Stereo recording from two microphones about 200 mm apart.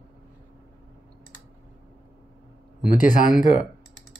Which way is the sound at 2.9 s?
40° left (ahead or behind).